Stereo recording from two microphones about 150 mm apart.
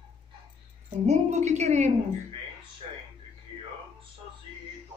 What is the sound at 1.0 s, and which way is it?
Speech, 50° right (ahead or behind).